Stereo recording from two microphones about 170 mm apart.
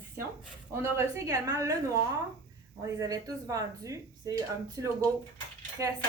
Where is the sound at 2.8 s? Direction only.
20° right (ahead or behind).